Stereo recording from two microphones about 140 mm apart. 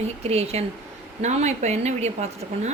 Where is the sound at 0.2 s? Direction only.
50° right (ahead or behind).